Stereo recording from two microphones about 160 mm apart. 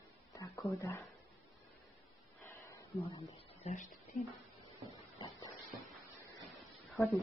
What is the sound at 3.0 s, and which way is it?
Speech, 40° left (ahead or behind).